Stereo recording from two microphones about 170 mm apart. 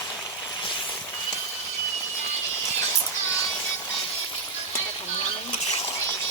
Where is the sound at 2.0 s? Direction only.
15° left (ahead or behind).